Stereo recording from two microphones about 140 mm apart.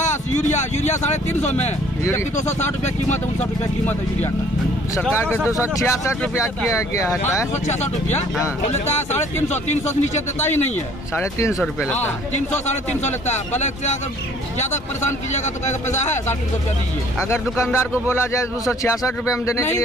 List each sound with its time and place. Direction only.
0.4 s speech: 55° left (ahead or behind)
5.1 s a man's voice: 15° left (ahead or behind)
7.6 s speech: 55° left (ahead or behind)
11.1 s a man's voice: 20° left (ahead or behind)
13.0 s speech: 55° left (ahead or behind)
17.7 s a man's voice: 20° left (ahead or behind)